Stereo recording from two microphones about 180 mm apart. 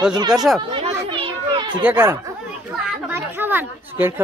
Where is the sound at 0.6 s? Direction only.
25° right (ahead or behind).